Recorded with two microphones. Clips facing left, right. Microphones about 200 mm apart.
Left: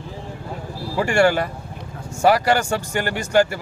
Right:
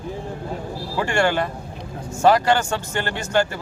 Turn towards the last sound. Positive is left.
turn(degrees=10)  # may be behind; listen again after turning